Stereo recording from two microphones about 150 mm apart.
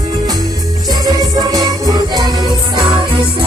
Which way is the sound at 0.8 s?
25° right (ahead or behind).